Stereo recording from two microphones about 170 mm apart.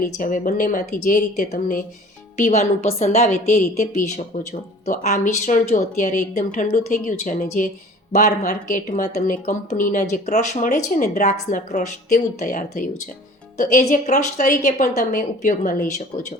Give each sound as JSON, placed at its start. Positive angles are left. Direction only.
{"t": 0.0, "sound": "a woman's voice", "side_deg": 50}